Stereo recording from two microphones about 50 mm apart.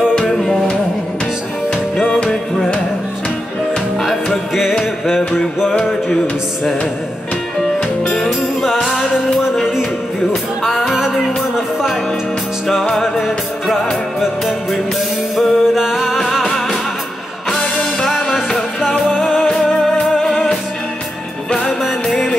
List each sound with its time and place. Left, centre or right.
0.3 s music: centre
5.7 s music: centre
8.6 s music: centre
9.1 s music: centre
15.3 s music: centre
17.6 s music: centre
18.3 s music: centre
19.4 s music: centre
21.6 s music: centre